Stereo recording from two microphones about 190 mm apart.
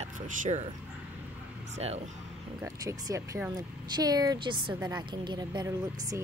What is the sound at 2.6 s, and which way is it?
Speech, 15° right (ahead or behind).